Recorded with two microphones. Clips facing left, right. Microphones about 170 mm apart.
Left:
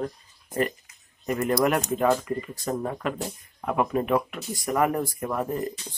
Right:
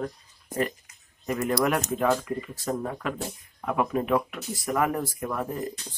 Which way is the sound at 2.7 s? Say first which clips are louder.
Left 1 dB; 15° left (ahead or behind).